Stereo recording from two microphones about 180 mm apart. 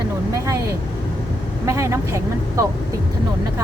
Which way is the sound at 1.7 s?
15° right (ahead or behind).